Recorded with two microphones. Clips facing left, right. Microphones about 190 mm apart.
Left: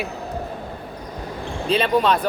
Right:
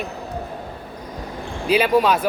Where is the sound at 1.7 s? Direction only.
5° right (ahead or behind).